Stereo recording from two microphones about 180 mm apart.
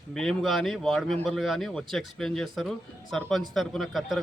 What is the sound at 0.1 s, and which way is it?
Speech, 5° left (ahead or behind).